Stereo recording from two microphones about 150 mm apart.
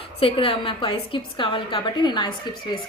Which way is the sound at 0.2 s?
35° left (ahead or behind).